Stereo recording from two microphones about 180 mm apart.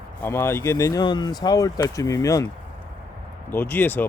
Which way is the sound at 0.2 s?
15° left (ahead or behind).